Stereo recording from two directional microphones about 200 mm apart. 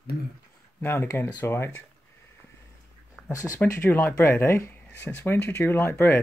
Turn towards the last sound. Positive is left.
turn(degrees=10)  # may be behind; listen again after turning